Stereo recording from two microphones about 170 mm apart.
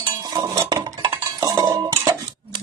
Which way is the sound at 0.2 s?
20° right (ahead or behind).